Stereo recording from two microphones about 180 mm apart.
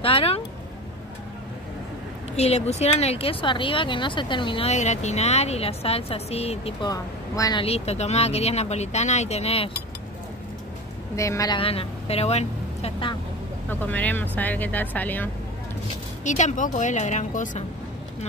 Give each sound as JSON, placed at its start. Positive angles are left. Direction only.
{"t": 0.0, "sound": "speech", "side_deg": 30}
{"t": 2.3, "sound": "speech", "side_deg": 35}
{"t": 6.9, "sound": "a woman's voice", "side_deg": 20}
{"t": 7.6, "sound": "speech", "side_deg": 35}
{"t": 11.1, "sound": "speech", "side_deg": 15}
{"t": 13.7, "sound": "speech", "side_deg": 10}
{"t": 16.3, "sound": "speech", "side_deg": 40}